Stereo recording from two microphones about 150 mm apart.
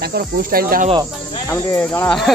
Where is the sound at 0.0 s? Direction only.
80° right.